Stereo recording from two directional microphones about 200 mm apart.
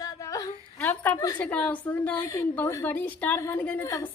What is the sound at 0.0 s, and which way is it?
A woman's voice, 15° left (ahead or behind).